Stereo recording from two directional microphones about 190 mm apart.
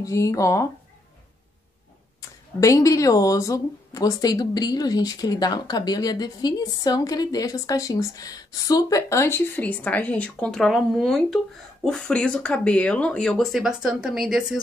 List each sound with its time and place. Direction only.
0.0 s speech: 15° left (ahead or behind)
2.6 s speech: 15° left (ahead or behind); by 14.6 s centre (ahead or behind)